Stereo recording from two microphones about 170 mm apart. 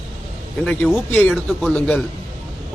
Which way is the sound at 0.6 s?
Centre (ahead or behind).